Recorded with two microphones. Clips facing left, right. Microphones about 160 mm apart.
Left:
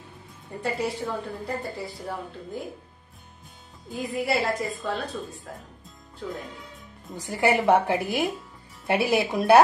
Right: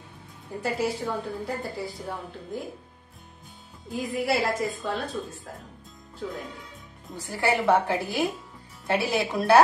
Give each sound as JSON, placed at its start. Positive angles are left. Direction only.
{"t": 0.6, "sound": "a woman's voice", "side_deg": 0}
{"t": 3.9, "sound": "a woman's voice", "side_deg": 0}
{"t": 7.2, "sound": "a woman's voice", "side_deg": 20}